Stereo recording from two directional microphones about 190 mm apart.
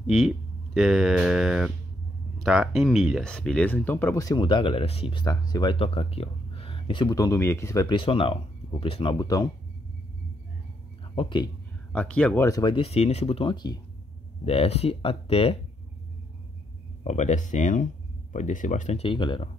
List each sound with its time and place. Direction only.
0.0 s speech: centre (ahead or behind)
0.7 s mantra: centre (ahead or behind)
2.3 s speech: centre (ahead or behind); by 9.5 s 20° left (ahead or behind)
11.1 s speech: 25° left (ahead or behind)
11.9 s speech: 5° left (ahead or behind)
12.4 s speech: 20° left (ahead or behind)
17.0 s speech: 40° left (ahead or behind)